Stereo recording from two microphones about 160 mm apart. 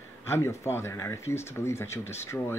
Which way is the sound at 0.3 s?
15° left (ahead or behind).